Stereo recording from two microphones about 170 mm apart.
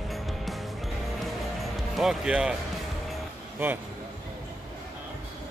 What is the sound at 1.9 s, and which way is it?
Speech, centre (ahead or behind).